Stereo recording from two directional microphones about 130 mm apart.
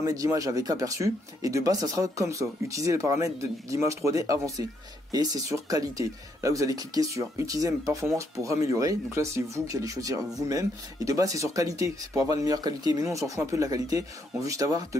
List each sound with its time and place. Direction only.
0.0 s speech: 25° right (ahead or behind)